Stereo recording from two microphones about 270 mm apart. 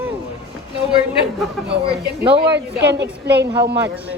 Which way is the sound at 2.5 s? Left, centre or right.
Right.